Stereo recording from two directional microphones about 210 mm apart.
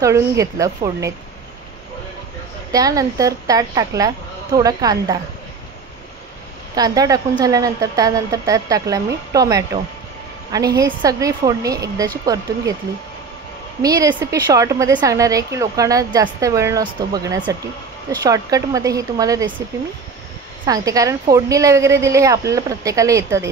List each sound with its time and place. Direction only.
0.0 s a woman's voice: 15° right (ahead or behind)
2.7 s a woman's voice: 15° right (ahead or behind)
6.7 s a woman's voice: 15° right (ahead or behind)
13.8 s a woman's voice: 15° right (ahead or behind)
20.6 s a woman's voice: 15° right (ahead or behind)